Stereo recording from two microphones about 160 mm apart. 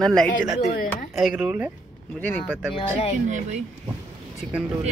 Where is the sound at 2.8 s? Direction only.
40° left (ahead or behind).